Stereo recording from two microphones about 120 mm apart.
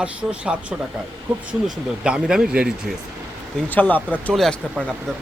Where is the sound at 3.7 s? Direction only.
15° left (ahead or behind).